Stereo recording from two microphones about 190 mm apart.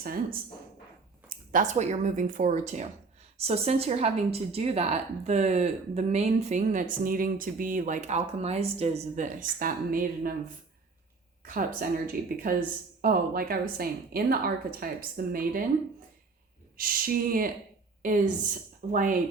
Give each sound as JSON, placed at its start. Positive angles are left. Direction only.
{"t": 0.0, "sound": "a woman's voice", "side_deg": -50}
{"t": 11.4, "sound": "a woman's voice", "side_deg": -45}
{"t": 16.7, "sound": "a woman's voice", "side_deg": -50}